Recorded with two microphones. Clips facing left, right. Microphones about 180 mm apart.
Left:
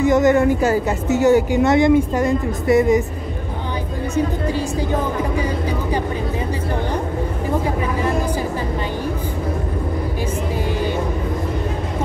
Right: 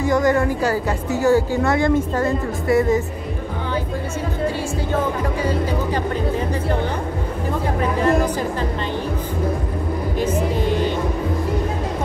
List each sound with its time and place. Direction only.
0.0 s a woman's voice: 20° left (ahead or behind)